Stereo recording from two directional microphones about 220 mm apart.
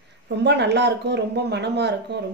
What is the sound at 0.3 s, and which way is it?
Speech, 50° right (ahead or behind).